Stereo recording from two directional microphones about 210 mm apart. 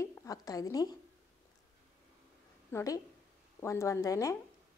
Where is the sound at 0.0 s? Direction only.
15° left (ahead or behind).